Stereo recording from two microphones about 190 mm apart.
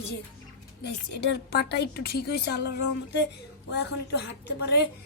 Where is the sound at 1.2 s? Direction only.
60° left (ahead or behind).